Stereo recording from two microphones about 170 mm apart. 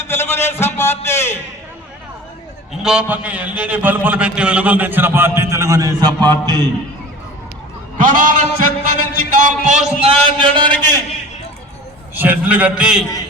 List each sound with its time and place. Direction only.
0.0 s a sound: 15° left (ahead or behind)
2.8 s a man's voice: 5° right (ahead or behind); by 6.3 s 25° right (ahead or behind)
7.9 s a man's voice: 50° right (ahead or behind); by 11.0 s 25° right (ahead or behind)
12.1 s a man's voice: 10° right (ahead or behind)